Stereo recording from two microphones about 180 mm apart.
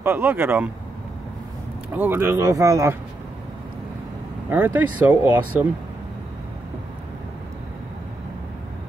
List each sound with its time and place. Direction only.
0.0 s speech: 10° right (ahead or behind)
2.0 s speech: 10° right (ahead or behind)
4.5 s speech: 10° right (ahead or behind)